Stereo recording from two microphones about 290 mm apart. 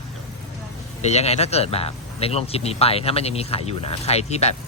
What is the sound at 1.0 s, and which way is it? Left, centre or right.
Speech, left.